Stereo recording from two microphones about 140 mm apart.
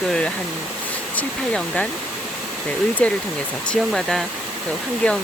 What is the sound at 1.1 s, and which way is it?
Speech, 10° left (ahead or behind).